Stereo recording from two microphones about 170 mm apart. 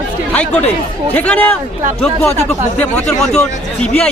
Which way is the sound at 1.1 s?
10° left (ahead or behind).